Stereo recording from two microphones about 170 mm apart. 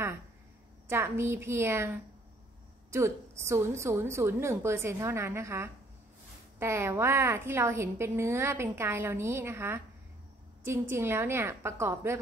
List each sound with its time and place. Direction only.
0.8 s a woman's voice: 15° right (ahead or behind)